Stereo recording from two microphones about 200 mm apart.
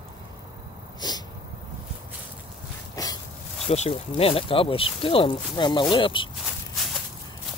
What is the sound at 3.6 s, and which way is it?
Speech, 30° left (ahead or behind).